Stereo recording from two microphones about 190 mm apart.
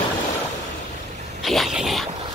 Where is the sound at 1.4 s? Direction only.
Centre (ahead or behind).